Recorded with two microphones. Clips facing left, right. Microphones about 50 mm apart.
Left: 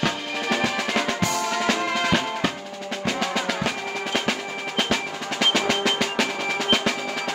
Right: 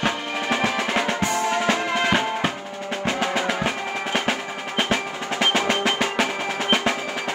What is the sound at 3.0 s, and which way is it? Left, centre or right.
Music, centre.